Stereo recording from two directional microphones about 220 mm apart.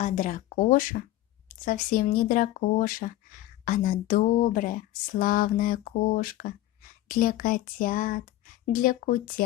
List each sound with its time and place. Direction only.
0.0 s speech: 35° left (ahead or behind)